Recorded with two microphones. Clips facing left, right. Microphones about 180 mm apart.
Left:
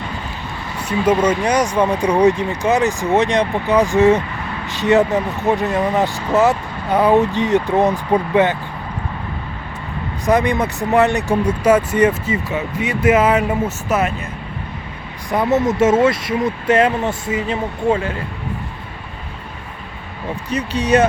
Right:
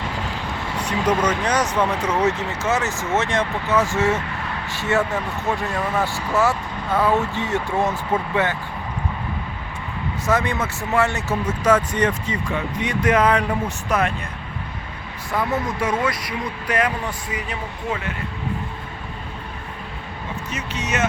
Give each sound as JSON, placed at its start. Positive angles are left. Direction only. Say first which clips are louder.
{"t": 0.8, "sound": "speech", "louder": "left 5 dB", "side_deg": 10}
{"t": 10.2, "sound": "speech", "louder": "left 6 dB", "side_deg": 15}
{"t": 15.3, "sound": "speech", "louder": "left 7 dB", "side_deg": 20}
{"t": 20.5, "sound": "speech", "louder": "left 12 dB", "side_deg": 35}